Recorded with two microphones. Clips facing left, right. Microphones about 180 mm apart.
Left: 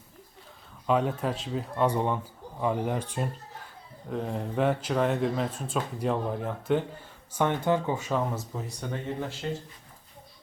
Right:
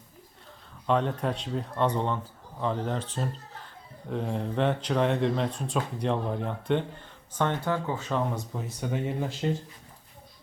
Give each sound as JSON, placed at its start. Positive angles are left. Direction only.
{"t": 0.9, "sound": "speech", "side_deg": 5}
{"t": 4.1, "sound": "speech", "side_deg": 0}
{"t": 9.4, "sound": "speech", "side_deg": -25}